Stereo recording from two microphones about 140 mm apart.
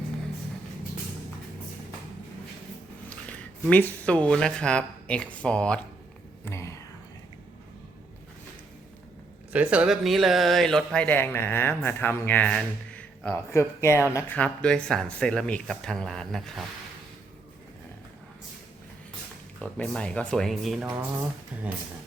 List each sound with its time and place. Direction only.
3.1 s speech: 10° left (ahead or behind)
6.4 s whispering: 20° left (ahead or behind)
9.5 s speech: 10° right (ahead or behind); by 13.4 s 10° left (ahead or behind)
13.5 s speech: 20° left (ahead or behind)
14.3 s speech: 10° left (ahead or behind)
19.6 s speech: 5° left (ahead or behind); by 21.7 s 10° right (ahead or behind)